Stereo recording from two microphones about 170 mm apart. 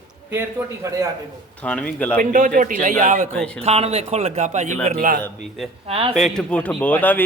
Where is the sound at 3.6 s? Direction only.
40° right (ahead or behind); by 5.2 s 55° right (ahead or behind).